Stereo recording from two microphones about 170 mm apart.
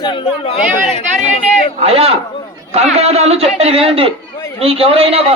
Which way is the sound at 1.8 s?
35° right (ahead or behind).